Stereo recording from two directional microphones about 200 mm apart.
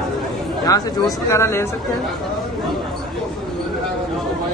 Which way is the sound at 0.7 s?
15° left (ahead or behind).